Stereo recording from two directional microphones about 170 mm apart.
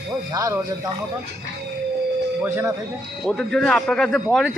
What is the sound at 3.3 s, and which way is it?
Speech, 5° left (ahead or behind).